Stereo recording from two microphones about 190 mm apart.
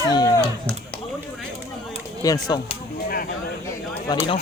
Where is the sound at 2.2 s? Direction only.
20° left (ahead or behind).